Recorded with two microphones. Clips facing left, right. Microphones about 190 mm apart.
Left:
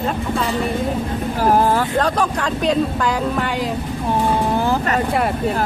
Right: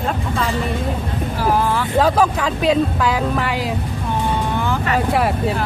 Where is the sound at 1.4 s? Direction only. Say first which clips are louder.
Left 3 dB; 45° left (ahead or behind).